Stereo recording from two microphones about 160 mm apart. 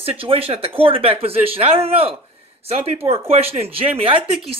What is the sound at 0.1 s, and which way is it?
Speech, 35° right (ahead or behind).